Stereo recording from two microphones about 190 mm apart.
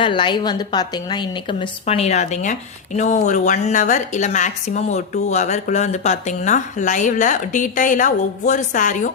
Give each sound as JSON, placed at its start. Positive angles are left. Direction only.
{"t": 0.0, "sound": "a woman's voice", "side_deg": 25}